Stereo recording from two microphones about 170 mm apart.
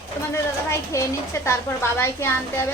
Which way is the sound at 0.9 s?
15° left (ahead or behind).